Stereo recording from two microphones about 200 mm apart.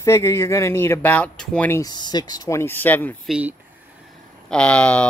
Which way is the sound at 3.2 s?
5° right (ahead or behind).